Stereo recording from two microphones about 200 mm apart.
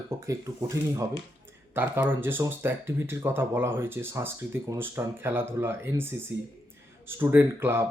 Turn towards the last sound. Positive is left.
turn(degrees=-10)  # may be behind; listen again after turning